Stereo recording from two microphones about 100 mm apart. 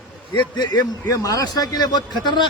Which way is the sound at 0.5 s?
45° left (ahead or behind).